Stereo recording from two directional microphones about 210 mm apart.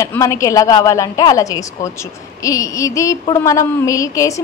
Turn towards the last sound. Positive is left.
turn(degrees=15)  # may be behind; listen again after turning